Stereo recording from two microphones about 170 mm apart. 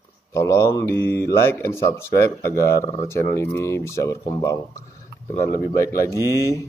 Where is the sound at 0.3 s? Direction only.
15° left (ahead or behind).